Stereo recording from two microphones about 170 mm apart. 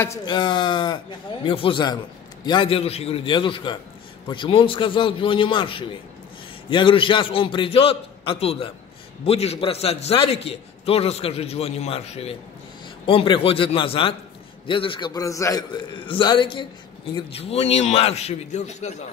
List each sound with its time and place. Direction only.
0.0 s a man's voice: 20° left (ahead or behind); by 19.0 s 40° left (ahead or behind)